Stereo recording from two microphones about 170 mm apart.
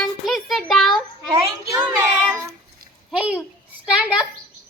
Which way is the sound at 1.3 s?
20° right (ahead or behind).